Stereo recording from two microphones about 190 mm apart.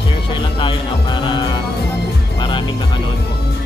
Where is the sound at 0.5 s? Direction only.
25° left (ahead or behind).